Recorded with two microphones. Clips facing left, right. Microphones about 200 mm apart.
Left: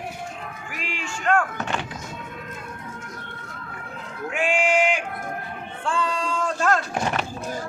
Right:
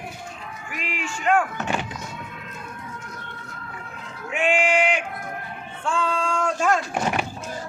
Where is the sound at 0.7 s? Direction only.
5° right (ahead or behind).